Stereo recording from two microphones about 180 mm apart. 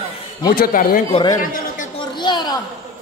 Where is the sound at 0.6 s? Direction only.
50° left (ahead or behind).